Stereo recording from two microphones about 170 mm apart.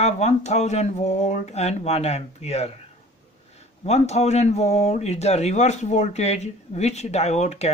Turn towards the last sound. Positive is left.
turn(degrees=40)  # may be behind; listen again after turning